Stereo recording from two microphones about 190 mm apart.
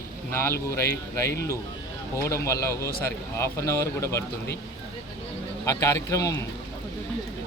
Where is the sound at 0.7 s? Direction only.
15° left (ahead or behind).